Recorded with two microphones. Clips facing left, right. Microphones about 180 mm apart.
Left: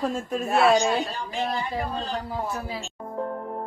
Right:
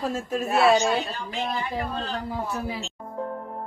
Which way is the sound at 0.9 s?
10° left (ahead or behind).